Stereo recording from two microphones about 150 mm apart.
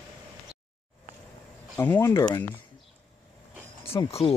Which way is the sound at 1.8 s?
15° left (ahead or behind).